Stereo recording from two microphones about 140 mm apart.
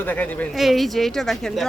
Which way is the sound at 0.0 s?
10° left (ahead or behind).